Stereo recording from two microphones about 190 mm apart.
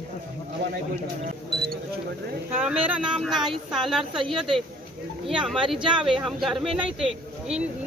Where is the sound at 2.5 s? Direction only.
5° right (ahead or behind).